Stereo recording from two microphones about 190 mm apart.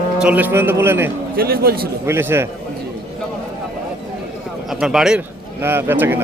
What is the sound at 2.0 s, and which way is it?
Speech, 15° right (ahead or behind).